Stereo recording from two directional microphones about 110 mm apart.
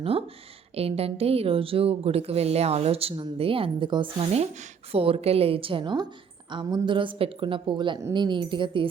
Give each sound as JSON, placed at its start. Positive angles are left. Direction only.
{"t": 0.0, "sound": "a woman's voice", "side_deg": -60}
{"t": 4.2, "sound": "speech", "side_deg": -70}
{"t": 4.9, "sound": "a woman's voice", "side_deg": -60}